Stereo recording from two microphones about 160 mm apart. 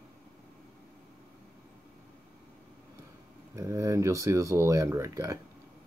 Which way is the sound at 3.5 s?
20° right (ahead or behind).